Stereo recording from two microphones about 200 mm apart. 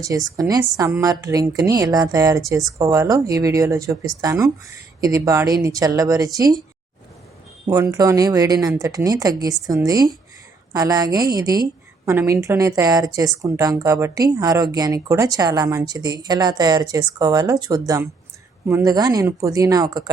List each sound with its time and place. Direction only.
0.0 s a woman's voice: 15° right (ahead or behind)
7.7 s a woman's voice: 20° right (ahead or behind)